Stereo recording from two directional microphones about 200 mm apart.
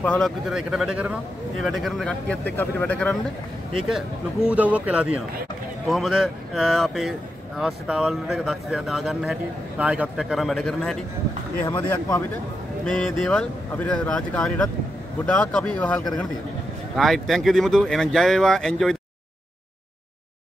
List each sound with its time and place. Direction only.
0.0 s speech: 5° left (ahead or behind)
3.9 s speech: 5° right (ahead or behind)
11.6 s speech: 15° left (ahead or behind)
12.8 s speech: 5° left (ahead or behind)